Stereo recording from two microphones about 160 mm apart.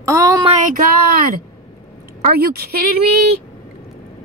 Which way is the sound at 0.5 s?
50° right (ahead or behind).